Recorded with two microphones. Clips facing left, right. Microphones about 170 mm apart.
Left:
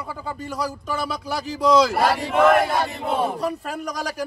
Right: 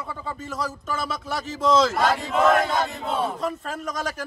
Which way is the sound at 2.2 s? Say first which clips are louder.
Left 5 dB; 60° left (ahead or behind).